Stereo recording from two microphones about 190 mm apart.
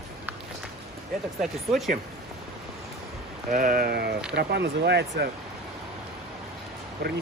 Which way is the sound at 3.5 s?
50° right (ahead or behind).